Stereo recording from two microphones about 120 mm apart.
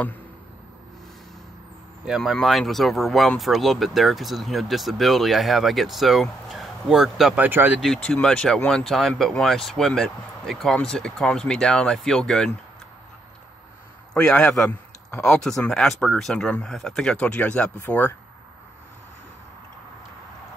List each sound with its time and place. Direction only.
2.0 s speech: centre (ahead or behind)
7.4 s speech: 15° right (ahead or behind)
7.8 s speech: 5° left (ahead or behind)
14.1 s speech: 5° left (ahead or behind)